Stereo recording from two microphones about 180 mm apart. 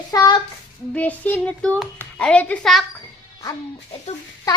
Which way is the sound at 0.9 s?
10° left (ahead or behind).